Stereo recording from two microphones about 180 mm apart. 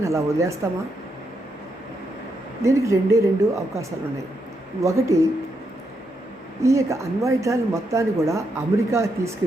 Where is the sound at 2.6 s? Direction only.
15° right (ahead or behind).